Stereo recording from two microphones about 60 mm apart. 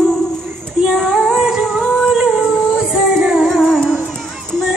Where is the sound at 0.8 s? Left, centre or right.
Centre.